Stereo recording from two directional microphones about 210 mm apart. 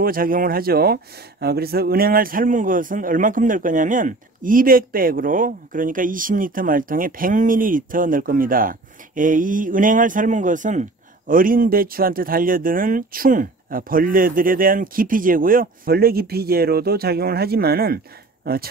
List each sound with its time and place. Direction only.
0.0 s a man's voice: 45° right (ahead or behind)